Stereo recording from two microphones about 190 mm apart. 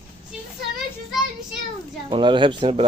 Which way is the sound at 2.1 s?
25° right (ahead or behind).